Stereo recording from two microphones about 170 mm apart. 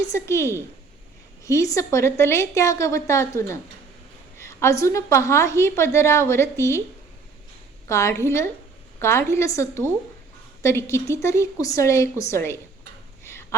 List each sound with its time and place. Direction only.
0.1 s a woman's voice: 15° left (ahead or behind)
7.9 s a woman's voice: 15° left (ahead or behind)
13.2 s a sound: 15° left (ahead or behind)